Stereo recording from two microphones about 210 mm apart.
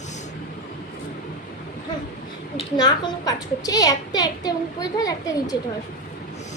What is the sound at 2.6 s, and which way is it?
A woman's voice, 20° left (ahead or behind).